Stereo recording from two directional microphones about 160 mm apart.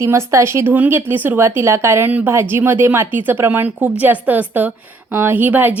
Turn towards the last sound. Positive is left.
turn(degrees=-10)  # may be behind; listen again after turning